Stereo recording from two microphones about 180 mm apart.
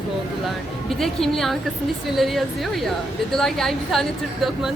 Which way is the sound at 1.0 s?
Centre (ahead or behind).